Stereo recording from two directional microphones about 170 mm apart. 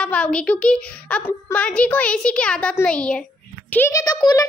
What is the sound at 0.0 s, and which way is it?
A woman's voice, 5° left (ahead or behind).